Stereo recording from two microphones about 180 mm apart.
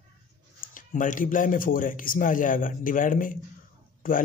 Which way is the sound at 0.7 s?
45° left (ahead or behind).